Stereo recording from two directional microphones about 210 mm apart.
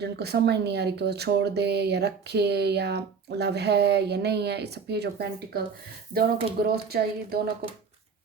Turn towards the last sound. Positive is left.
turn(degrees=-50)  # may be behind; listen again after turning